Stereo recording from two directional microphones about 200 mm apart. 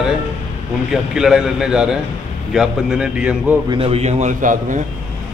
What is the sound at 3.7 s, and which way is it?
A man's voice, 30° right (ahead or behind).